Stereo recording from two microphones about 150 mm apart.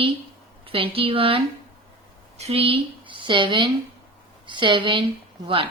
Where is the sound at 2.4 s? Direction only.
40° right (ahead or behind).